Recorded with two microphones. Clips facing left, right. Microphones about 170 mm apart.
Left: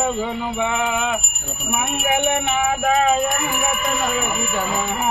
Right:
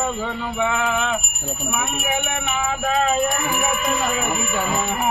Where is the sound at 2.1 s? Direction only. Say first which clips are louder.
Left 8 dB; 20° left (ahead or behind).